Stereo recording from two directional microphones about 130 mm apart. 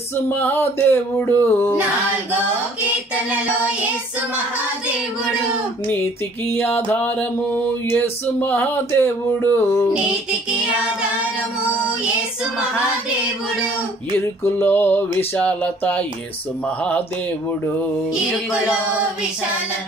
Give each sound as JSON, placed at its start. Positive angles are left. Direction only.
{"t": 0.3, "sound": "music", "side_deg": 15}
{"t": 6.5, "sound": "music", "side_deg": 15}
{"t": 14.1, "sound": "music", "side_deg": 15}